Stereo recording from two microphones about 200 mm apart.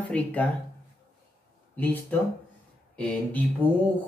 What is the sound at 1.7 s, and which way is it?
Speech, 10° left (ahead or behind).